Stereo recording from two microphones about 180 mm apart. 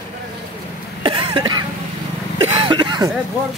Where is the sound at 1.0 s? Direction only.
25° right (ahead or behind).